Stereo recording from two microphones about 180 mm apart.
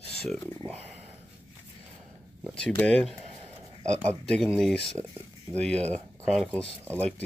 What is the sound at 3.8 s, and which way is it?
Speech, 40° right (ahead or behind).